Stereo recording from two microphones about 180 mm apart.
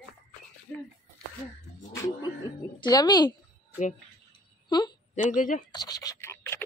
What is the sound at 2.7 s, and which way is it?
Speech, 20° left (ahead or behind).